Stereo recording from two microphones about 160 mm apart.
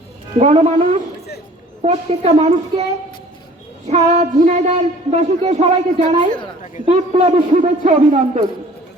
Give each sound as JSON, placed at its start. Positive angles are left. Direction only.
{"t": 0.3, "sound": "a man's voice", "side_deg": -45}
{"t": 3.8, "sound": "speech", "side_deg": -45}
{"t": 6.8, "sound": "a man's voice", "side_deg": -35}
{"t": 7.5, "sound": "speech", "side_deg": -50}